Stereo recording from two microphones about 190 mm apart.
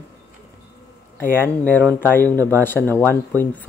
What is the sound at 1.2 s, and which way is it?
Speech, 10° left (ahead or behind).